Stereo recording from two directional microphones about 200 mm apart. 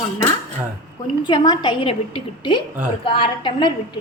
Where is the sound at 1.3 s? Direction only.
20° left (ahead or behind).